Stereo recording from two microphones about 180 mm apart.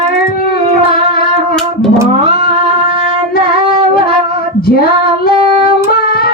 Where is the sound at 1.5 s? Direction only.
5° left (ahead or behind).